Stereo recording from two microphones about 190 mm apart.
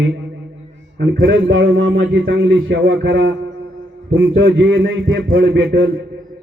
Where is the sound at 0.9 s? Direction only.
90° right.